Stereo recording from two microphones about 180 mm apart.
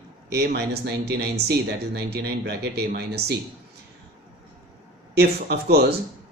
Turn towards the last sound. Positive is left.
turn(degrees=-65)  # may be behind; listen again after turning